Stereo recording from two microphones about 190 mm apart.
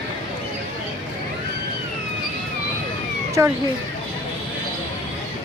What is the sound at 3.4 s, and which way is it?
Speech, 15° right (ahead or behind).